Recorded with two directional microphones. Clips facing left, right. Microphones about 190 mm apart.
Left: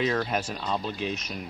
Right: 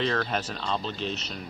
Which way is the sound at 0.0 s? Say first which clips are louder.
Left 1 dB; 10° left (ahead or behind).